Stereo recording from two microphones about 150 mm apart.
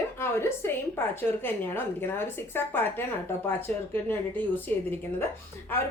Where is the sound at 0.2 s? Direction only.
15° left (ahead or behind).